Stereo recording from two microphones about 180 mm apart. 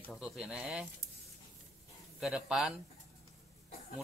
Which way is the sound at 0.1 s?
5° right (ahead or behind).